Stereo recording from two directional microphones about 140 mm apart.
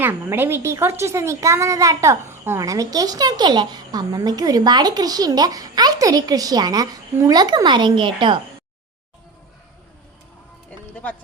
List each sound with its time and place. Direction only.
0.0 s speech: 15° right (ahead or behind); by 8.4 s 35° right (ahead or behind)